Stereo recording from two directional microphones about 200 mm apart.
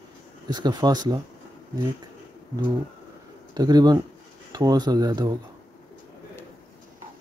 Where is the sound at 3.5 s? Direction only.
20° right (ahead or behind).